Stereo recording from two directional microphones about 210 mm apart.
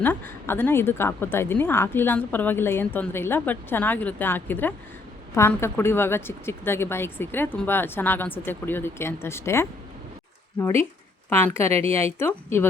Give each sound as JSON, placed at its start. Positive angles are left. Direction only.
{"t": 0.0, "sound": "a woman's voice", "side_deg": 10}
{"t": 11.7, "sound": "a woman's voice", "side_deg": -30}
{"t": 12.2, "sound": "a woman's voice", "side_deg": 10}